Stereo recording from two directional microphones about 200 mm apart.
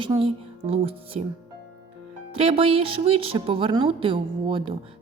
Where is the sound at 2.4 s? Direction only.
30° right (ahead or behind).